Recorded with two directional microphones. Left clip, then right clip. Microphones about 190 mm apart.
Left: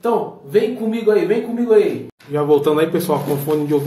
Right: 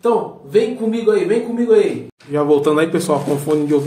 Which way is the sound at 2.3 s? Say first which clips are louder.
Right 1 dB; 15° right (ahead or behind).